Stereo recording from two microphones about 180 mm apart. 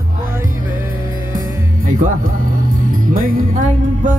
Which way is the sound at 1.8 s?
45° right (ahead or behind).